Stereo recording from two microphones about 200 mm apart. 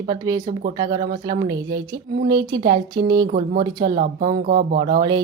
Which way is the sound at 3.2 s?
40° right (ahead or behind).